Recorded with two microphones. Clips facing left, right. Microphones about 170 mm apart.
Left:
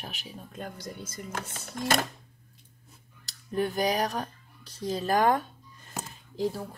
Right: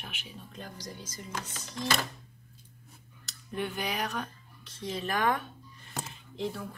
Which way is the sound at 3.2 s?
40° left (ahead or behind).